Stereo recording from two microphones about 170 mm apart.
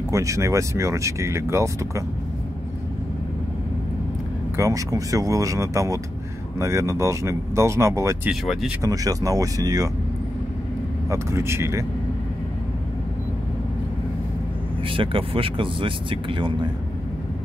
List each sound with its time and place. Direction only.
0.1 s speech: 20° right (ahead or behind)
4.6 s speech: 20° right (ahead or behind)
8.3 s speech: 5° right (ahead or behind)
8.8 s speech: 20° right (ahead or behind)
11.1 s speech: 15° right (ahead or behind)
14.9 s speech: 30° right (ahead or behind)